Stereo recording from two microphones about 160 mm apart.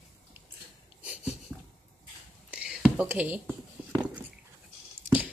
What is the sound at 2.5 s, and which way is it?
Whispering, 5° right (ahead or behind).